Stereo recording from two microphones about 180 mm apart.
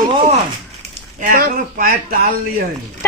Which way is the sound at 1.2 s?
50° right (ahead or behind).